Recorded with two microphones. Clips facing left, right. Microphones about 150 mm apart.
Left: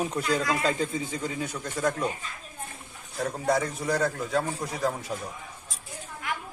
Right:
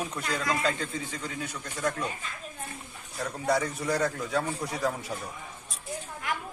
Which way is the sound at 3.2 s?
5° left (ahead or behind).